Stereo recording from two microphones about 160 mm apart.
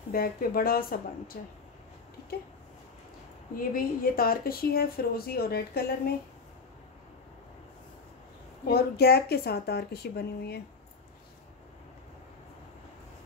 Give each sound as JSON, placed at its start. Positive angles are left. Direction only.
{"t": 0.1, "sound": "speech", "side_deg": 65}
{"t": 3.5, "sound": "speech", "side_deg": 65}
{"t": 8.6, "sound": "a woman's voice", "side_deg": 80}